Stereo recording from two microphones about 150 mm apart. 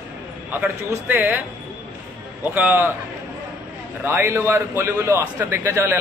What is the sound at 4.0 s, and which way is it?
A man's voice, 15° right (ahead or behind).